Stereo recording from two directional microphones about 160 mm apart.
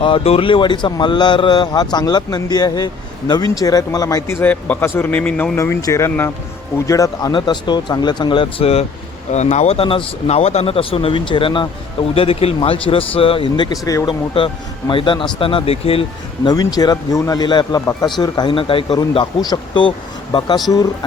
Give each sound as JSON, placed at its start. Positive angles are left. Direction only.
{"t": 0.0, "sound": "a man's voice", "side_deg": 35}
{"t": 16.5, "sound": "speech", "side_deg": 25}